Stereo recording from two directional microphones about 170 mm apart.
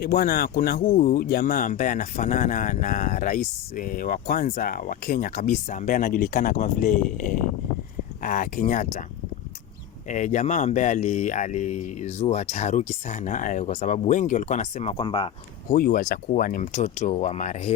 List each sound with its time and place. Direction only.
0.0 s speech: 60° left (ahead or behind)
10.1 s speech: 45° left (ahead or behind)
14.9 s speech: 30° left (ahead or behind)
15.7 s speech: 55° left (ahead or behind)